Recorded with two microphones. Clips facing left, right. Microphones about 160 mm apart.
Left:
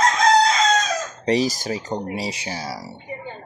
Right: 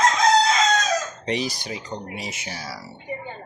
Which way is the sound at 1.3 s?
40° left (ahead or behind).